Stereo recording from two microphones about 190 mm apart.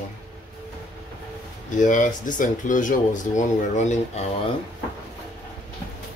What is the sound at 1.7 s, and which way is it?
Speech, 40° left (ahead or behind).